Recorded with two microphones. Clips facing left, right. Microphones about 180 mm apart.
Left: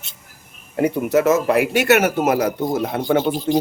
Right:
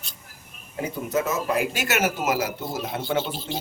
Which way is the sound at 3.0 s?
45° left (ahead or behind).